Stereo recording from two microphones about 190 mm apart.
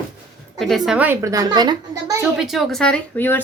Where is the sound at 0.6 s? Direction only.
Centre (ahead or behind); by 2.1 s 20° right (ahead or behind).